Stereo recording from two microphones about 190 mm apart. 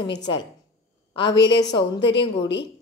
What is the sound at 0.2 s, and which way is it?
A woman's voice, 25° left (ahead or behind).